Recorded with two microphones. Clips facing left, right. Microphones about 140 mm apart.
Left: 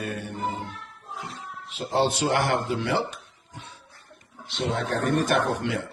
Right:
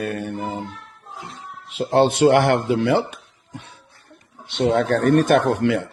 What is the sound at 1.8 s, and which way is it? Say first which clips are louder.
Speech: right 8 dB; 60° right (ahead or behind).